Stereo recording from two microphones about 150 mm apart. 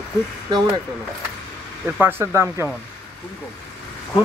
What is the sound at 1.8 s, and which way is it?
Speech, 15° right (ahead or behind).